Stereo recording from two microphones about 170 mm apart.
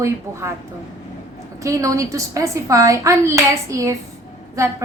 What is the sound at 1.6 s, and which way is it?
A child's voice, 20° right (ahead or behind).